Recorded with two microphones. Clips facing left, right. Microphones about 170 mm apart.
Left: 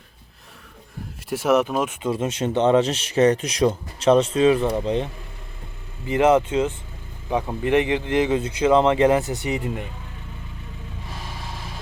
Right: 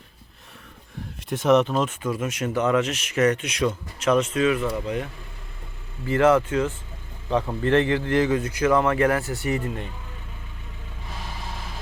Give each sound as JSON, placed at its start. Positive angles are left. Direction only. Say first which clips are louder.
{"t": 1.3, "sound": "speech", "louder": "even", "side_deg": 5}
{"t": 2.0, "sound": "a man's voice", "louder": "left 3 dB", "side_deg": 30}